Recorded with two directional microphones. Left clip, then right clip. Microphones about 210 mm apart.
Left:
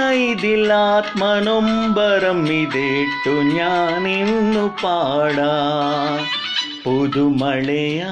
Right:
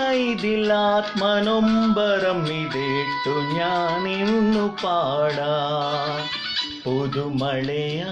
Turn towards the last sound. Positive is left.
turn(degrees=20)  # may be behind; listen again after turning